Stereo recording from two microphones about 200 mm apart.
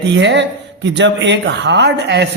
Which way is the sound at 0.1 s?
60° right (ahead or behind).